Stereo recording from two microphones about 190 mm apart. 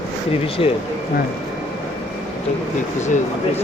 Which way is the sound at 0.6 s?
30° left (ahead or behind).